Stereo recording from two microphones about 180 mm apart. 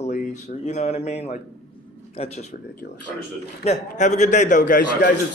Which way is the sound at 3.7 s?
40° left (ahead or behind).